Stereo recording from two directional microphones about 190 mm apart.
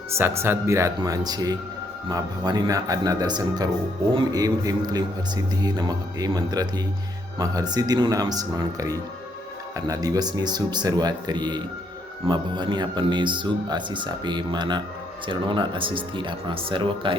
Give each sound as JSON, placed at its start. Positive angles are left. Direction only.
{"t": 0.1, "sound": "speech", "side_deg": -15}